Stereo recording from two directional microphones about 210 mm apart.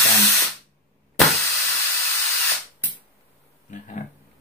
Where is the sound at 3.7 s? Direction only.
35° left (ahead or behind).